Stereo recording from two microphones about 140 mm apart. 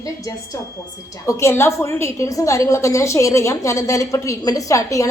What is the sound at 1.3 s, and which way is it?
A woman's voice, 20° left (ahead or behind).